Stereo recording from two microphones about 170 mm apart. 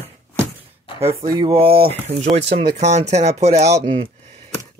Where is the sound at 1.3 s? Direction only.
30° right (ahead or behind).